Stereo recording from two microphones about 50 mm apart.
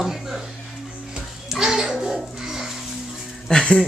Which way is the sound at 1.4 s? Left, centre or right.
Centre.